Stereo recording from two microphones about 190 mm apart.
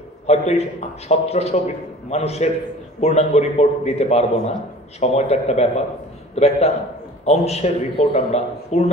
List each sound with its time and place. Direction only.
0.3 s a man's voice: 35° left (ahead or behind)